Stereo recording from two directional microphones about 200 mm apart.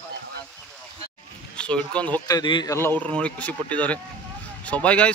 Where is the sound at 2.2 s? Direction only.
20° left (ahead or behind).